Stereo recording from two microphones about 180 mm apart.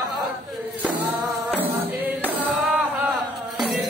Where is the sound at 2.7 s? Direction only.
10° right (ahead or behind).